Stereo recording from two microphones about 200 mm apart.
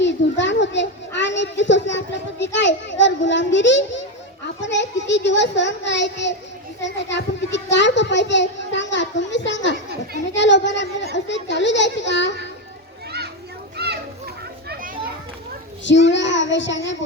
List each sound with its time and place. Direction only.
0.0 s a sound: 65° left (ahead or behind)
4.4 s a child's voice: 65° left (ahead or behind)
10.3 s child singing: 60° left (ahead or behind)
11.1 s children playing: 65° left (ahead or behind)
13.7 s children playing: 55° right (ahead or behind)
15.8 s child singing: 65° left (ahead or behind)